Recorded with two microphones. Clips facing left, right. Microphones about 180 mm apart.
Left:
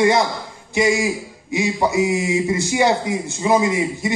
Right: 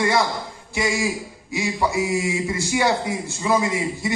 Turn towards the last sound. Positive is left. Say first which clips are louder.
# left 4 dB
turn(degrees=20)  # may be behind; listen again after turning